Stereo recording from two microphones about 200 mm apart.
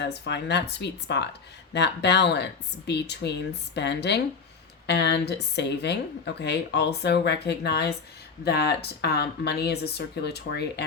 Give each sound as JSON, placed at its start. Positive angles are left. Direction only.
{"t": 0.0, "sound": "speech", "side_deg": 60}